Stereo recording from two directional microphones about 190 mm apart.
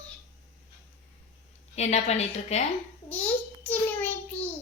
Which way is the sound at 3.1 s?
10° left (ahead or behind).